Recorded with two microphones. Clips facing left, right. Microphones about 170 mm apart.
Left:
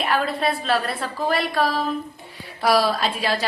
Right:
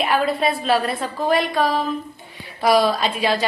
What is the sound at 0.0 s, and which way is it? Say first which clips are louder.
A woman's voice: right 3 dB; centre (ahead or behind).